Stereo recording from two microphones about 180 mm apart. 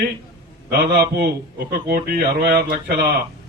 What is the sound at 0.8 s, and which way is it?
Speech, 65° right (ahead or behind).